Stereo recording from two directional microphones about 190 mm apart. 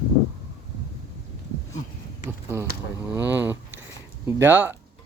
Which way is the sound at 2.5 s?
10° right (ahead or behind).